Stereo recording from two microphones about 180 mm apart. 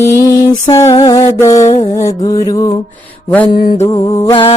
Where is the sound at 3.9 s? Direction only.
15° left (ahead or behind).